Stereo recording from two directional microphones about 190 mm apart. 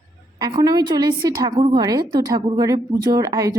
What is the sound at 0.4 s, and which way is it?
A woman's voice, 20° right (ahead or behind).